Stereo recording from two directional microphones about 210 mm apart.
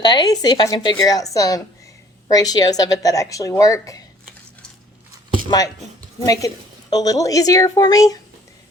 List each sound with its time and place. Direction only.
0.0 s speech: 20° left (ahead or behind)
5.5 s speech: 15° left (ahead or behind)